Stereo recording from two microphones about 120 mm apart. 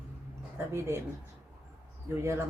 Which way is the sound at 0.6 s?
20° right (ahead or behind).